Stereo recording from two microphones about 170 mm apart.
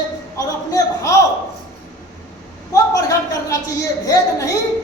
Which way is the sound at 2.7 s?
20° left (ahead or behind).